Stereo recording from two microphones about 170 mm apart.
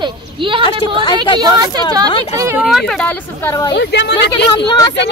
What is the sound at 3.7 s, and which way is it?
Speech, 85° left.